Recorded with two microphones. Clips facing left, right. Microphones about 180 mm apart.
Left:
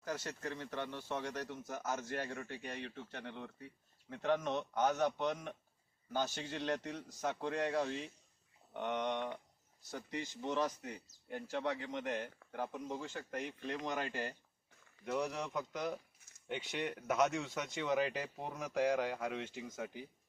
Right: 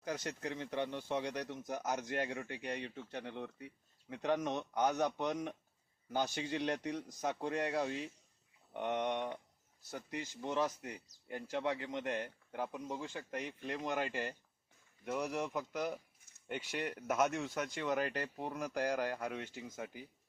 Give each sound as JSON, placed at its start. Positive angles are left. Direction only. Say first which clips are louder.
{"t": 0.1, "sound": "speech", "louder": "right 1 dB", "side_deg": -15}